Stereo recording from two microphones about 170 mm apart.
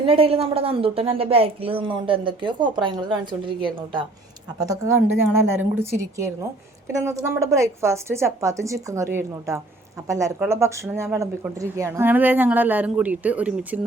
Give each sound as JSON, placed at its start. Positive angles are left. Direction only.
{"t": 0.0, "sound": "a woman's voice", "side_deg": -35}